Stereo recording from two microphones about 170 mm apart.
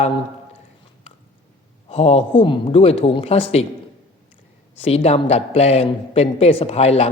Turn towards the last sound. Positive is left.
turn(degrees=40)  # may be behind; listen again after turning